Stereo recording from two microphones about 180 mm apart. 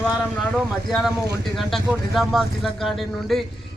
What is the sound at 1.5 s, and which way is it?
Speech, centre (ahead or behind).